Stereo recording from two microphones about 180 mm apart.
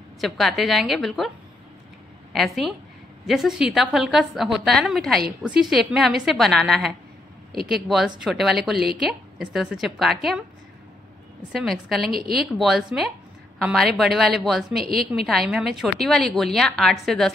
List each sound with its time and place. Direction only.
0.2 s a woman's voice: centre (ahead or behind)
2.3 s a woman's voice: centre (ahead or behind)
11.5 s a woman's voice: centre (ahead or behind)
12.1 s speech: 55° right (ahead or behind)
12.5 s a woman's voice: centre (ahead or behind)